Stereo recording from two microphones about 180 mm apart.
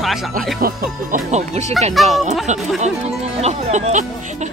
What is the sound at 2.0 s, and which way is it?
Speech, centre (ahead or behind).